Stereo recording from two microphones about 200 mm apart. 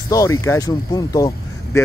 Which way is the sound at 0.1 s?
15° left (ahead or behind).